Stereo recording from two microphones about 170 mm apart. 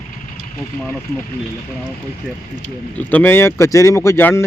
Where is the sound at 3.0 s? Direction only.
10° left (ahead or behind).